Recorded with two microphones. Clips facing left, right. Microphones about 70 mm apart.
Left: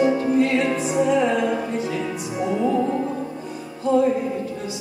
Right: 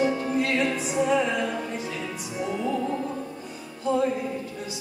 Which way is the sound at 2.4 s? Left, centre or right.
Centre.